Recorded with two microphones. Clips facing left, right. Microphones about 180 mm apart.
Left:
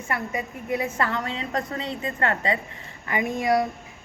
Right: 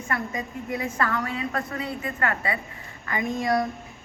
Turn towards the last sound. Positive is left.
turn(degrees=20)  # may be behind; listen again after turning